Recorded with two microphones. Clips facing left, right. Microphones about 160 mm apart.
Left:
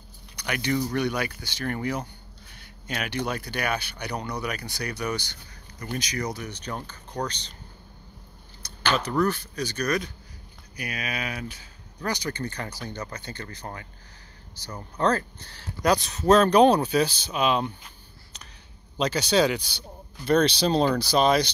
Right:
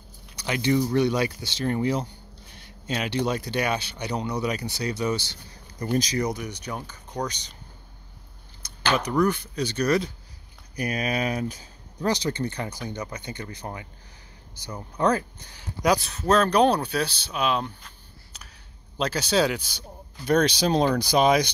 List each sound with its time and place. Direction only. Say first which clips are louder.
0.4 s speech: right 4 dB; 25° right (ahead or behind)
6.2 s speech: right 3 dB; 15° right (ahead or behind)
8.6 s a sound: right 1 dB; 15° right (ahead or behind)
9.2 s speech: right 2 dB; 20° right (ahead or behind)
10.8 s speech: right 6 dB; 40° right (ahead or behind)
12.0 s speech: right 5 dB; 20° right (ahead or behind)